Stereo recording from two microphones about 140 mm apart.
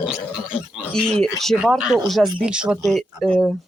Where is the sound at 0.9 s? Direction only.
5° left (ahead or behind).